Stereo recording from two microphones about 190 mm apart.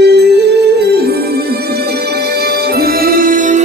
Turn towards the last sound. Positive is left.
turn(degrees=-45)  # may be behind; listen again after turning